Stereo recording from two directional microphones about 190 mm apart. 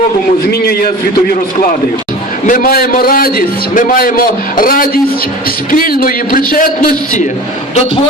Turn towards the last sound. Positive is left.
turn(degrees=45)  # may be behind; listen again after turning